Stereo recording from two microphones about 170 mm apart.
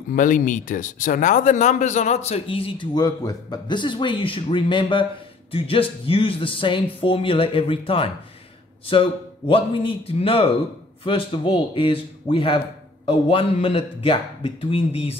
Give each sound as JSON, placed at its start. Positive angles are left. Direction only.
{"t": 0.1, "sound": "speech", "side_deg": 50}